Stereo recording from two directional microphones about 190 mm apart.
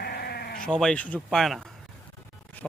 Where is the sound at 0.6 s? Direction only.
5° left (ahead or behind).